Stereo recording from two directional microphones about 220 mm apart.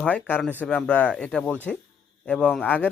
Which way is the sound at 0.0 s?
5° left (ahead or behind).